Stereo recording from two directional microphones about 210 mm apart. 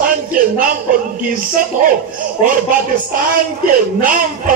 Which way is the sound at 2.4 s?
40° right (ahead or behind).